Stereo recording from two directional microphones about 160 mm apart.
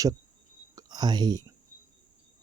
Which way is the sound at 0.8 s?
25° right (ahead or behind).